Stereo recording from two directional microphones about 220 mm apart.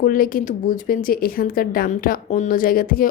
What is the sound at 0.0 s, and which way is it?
Speech, 40° left (ahead or behind).